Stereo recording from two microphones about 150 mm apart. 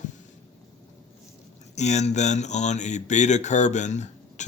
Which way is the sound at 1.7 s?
50° left (ahead or behind).